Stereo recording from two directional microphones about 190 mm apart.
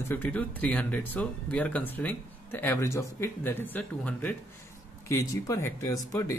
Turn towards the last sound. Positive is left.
turn(degrees=15)  # may be behind; listen again after turning